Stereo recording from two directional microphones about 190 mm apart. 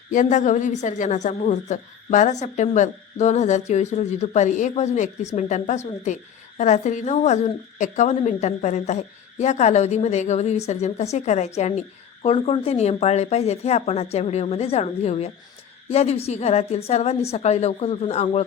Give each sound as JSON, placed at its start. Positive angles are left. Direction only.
{"t": 0.1, "sound": "a woman's voice", "side_deg": 40}